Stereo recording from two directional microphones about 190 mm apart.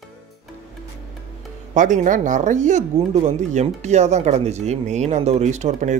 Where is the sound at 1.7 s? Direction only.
40° right (ahead or behind).